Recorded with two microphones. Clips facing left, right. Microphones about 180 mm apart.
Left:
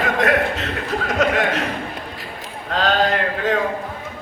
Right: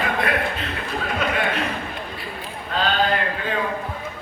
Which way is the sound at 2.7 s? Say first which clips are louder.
Left 3 dB; 90° left.